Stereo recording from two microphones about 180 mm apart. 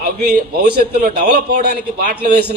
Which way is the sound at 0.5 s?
65° right (ahead or behind).